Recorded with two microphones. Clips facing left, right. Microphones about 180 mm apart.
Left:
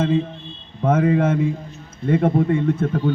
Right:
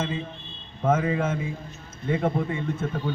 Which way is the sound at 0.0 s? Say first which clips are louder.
Left 10 dB; 55° left (ahead or behind).